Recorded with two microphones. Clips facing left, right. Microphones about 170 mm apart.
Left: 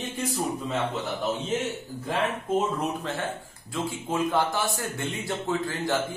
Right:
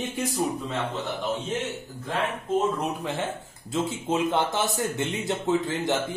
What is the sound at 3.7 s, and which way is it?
Speech, 20° right (ahead or behind).